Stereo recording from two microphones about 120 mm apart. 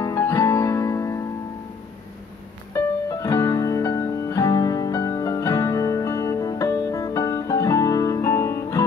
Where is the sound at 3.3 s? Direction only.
25° left (ahead or behind).